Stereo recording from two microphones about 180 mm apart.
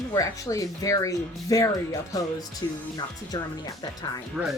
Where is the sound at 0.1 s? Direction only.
20° left (ahead or behind).